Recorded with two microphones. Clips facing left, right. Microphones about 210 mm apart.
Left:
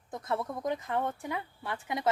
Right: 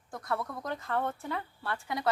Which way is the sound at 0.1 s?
20° left (ahead or behind).